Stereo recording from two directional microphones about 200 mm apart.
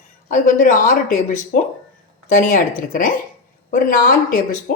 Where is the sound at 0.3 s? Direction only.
40° left (ahead or behind).